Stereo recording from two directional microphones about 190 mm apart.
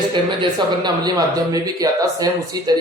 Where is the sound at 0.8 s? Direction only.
20° right (ahead or behind).